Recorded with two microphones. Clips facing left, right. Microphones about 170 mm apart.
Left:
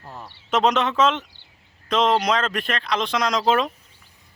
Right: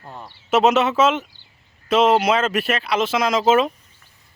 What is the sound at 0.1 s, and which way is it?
Speech, 5° right (ahead or behind).